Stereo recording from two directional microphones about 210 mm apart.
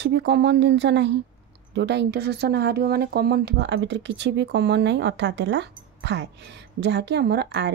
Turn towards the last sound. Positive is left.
turn(degrees=-50)  # may be behind; listen again after turning